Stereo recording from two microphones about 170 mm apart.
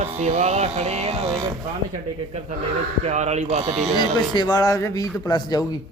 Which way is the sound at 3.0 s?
40° right (ahead or behind).